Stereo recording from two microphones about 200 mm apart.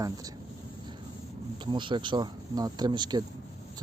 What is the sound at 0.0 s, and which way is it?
Speech, 15° right (ahead or behind).